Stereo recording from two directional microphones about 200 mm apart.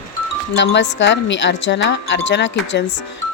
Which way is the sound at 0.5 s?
65° left (ahead or behind).